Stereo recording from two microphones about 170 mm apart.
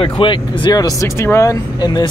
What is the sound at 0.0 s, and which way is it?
Speech, 30° left (ahead or behind).